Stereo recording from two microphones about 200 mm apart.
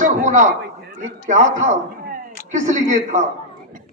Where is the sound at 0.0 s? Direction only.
40° right (ahead or behind).